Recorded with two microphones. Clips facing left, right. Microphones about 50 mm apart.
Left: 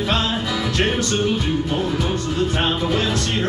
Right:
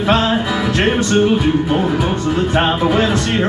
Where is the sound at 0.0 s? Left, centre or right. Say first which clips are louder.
Right 7 dB; right.